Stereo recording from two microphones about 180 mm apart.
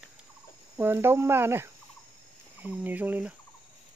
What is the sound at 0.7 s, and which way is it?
Speech, 10° right (ahead or behind).